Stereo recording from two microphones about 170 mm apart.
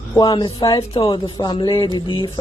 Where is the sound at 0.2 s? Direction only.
25° left (ahead or behind).